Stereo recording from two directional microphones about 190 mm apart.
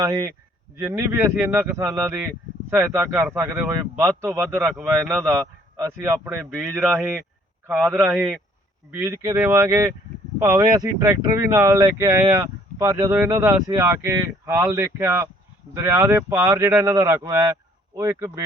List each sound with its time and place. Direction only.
0.0 s speech: 15° right (ahead or behind)